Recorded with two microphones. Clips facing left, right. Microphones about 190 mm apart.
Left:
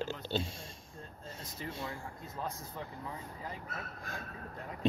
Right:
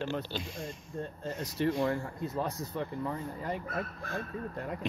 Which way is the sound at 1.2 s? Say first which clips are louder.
Right 13 dB; 75° right (ahead or behind).